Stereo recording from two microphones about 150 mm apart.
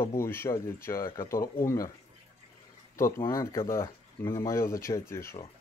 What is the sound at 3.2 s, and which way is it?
Speech, 20° left (ahead or behind).